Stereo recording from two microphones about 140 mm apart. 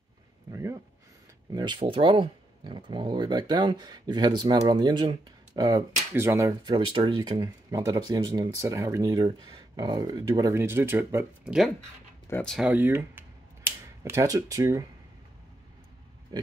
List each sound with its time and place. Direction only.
0.5 s a sound: 20° right (ahead or behind)
1.5 s speech: 30° right (ahead or behind)
6.1 s speech: 15° right (ahead or behind)
6.6 s speech: 35° right (ahead or behind); by 11.5 s 15° right (ahead or behind)
12.3 s speech: 10° left (ahead or behind)
12.5 s speech: 10° right (ahead or behind); by 14.9 s 25° right (ahead or behind)
16.3 s pig: 30° right (ahead or behind)